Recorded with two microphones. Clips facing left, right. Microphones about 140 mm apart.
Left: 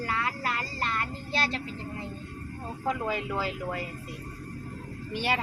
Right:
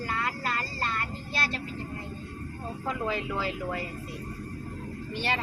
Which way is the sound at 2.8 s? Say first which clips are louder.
Left 1 dB; 15° left (ahead or behind).